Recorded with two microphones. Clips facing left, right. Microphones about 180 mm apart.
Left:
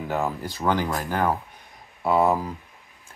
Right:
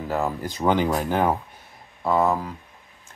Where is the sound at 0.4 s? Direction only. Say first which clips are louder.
Right 3 dB; 15° right (ahead or behind).